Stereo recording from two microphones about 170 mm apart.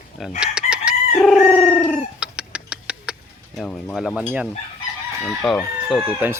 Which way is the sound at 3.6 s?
5° left (ahead or behind).